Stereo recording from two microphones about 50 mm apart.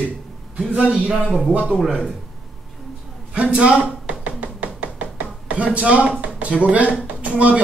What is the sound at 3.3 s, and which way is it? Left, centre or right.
Speech, right.